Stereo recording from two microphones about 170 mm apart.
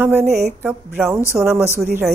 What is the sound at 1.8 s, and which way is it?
Speech, 15° right (ahead or behind).